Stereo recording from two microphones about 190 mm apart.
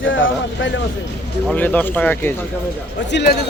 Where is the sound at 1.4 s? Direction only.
10° left (ahead or behind).